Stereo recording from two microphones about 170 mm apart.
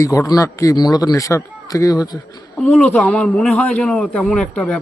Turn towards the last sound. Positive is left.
turn(degrees=5)  # may be behind; listen again after turning